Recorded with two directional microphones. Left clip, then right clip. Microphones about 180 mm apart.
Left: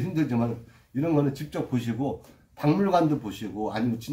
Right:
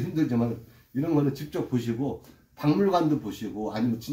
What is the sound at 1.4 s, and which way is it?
Speech, 15° right (ahead or behind).